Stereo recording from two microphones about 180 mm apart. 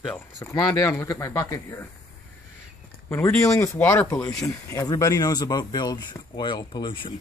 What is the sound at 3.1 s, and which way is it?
Speech, 15° left (ahead or behind).